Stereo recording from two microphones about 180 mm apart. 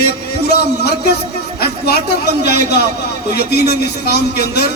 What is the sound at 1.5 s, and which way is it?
Music, 60° left (ahead or behind).